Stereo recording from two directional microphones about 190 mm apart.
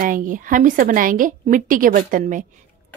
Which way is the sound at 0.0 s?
45° right (ahead or behind).